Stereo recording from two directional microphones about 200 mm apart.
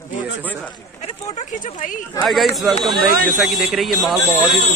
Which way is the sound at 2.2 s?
Centre (ahead or behind).